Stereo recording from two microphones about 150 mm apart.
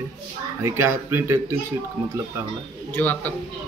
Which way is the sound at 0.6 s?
15° right (ahead or behind).